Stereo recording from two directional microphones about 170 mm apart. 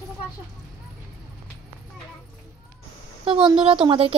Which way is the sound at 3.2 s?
30° right (ahead or behind).